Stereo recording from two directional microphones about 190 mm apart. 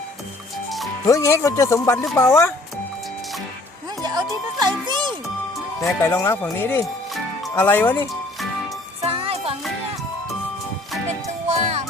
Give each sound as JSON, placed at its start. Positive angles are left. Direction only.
{"t": 1.0, "sound": "speech", "side_deg": 15}
{"t": 4.0, "sound": "music", "side_deg": -20}
{"t": 5.8, "sound": "speech", "side_deg": 15}
{"t": 9.0, "sound": "music", "side_deg": -30}
{"t": 11.4, "sound": "music", "side_deg": -35}